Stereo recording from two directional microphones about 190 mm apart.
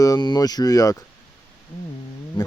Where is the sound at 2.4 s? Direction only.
25° left (ahead or behind).